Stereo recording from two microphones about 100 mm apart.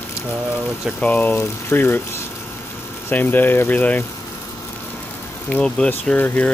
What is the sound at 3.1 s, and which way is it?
Speech, 20° left (ahead or behind).